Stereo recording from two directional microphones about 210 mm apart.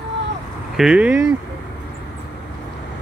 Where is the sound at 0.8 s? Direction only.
5° right (ahead or behind).